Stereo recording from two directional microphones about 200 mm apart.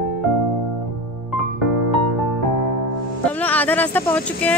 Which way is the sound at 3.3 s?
10° left (ahead or behind).